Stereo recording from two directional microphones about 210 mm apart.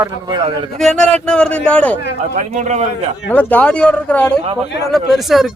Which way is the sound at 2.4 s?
35° right (ahead or behind).